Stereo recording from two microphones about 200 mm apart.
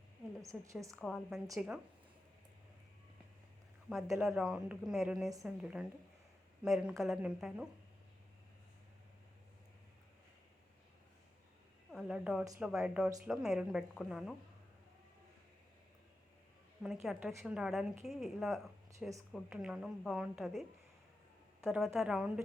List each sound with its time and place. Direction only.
0.4 s a woman's voice: 15° right (ahead or behind)
0.9 s a woman's voice: centre (ahead or behind)
4.1 s a woman's voice: centre (ahead or behind)
11.9 s a woman's voice: 5° right (ahead or behind)
16.8 s a woman's voice: centre (ahead or behind)